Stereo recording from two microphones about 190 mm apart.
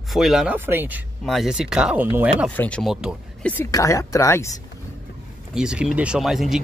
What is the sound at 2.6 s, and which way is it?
Speech, 5° left (ahead or behind).